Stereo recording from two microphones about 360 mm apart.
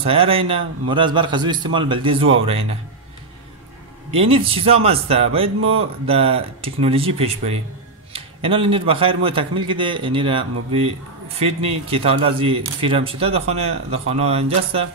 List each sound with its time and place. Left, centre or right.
0.0 s a man's voice: centre
4.1 s a man's voice: centre
5.6 s speech: right
6.0 s a man's voice: centre